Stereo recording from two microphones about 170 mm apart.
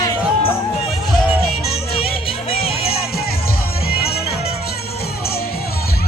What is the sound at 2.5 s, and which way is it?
Music, 35° left (ahead or behind).